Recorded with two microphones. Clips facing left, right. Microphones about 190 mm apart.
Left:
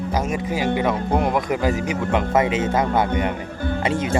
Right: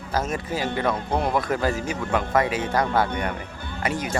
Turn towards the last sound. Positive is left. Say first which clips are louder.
# left 6 dB
turn(degrees=25)  # may be behind; listen again after turning